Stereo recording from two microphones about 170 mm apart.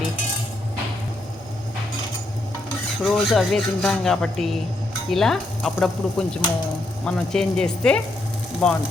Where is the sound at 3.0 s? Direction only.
Centre (ahead or behind).